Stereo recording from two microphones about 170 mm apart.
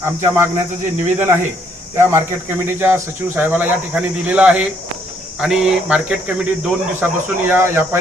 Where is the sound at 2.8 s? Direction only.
15° right (ahead or behind).